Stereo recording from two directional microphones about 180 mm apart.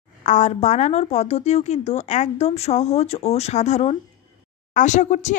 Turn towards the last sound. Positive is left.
turn(degrees=40)  # may be behind; listen again after turning